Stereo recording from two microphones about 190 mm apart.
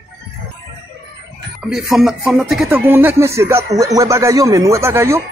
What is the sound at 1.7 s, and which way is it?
Speech, centre (ahead or behind).